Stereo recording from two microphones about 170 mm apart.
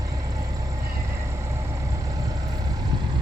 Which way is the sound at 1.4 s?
15° right (ahead or behind).